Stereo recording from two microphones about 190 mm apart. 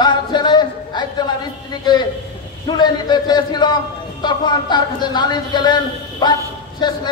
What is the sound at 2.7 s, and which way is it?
A man's voice, 20° left (ahead or behind).